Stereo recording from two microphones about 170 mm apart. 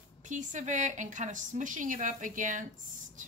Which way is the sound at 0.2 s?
45° right (ahead or behind).